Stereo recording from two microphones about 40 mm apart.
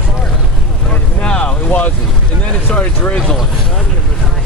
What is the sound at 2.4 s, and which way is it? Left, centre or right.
Vehicle, left.